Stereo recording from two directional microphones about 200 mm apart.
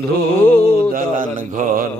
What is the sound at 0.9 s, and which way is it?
Mantra, 40° right (ahead or behind).